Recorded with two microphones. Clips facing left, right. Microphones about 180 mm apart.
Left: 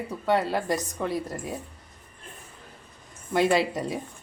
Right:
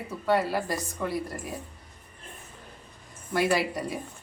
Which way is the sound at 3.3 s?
25° left (ahead or behind).